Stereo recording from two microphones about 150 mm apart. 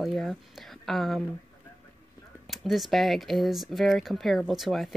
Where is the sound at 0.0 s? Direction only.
Centre (ahead or behind).